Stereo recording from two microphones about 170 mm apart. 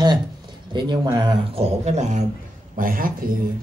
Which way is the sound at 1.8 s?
40° right (ahead or behind).